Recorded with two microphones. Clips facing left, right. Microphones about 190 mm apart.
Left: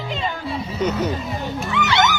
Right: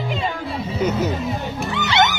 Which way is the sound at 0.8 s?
10° right (ahead or behind).